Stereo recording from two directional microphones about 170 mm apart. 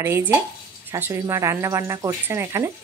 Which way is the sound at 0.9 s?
15° right (ahead or behind).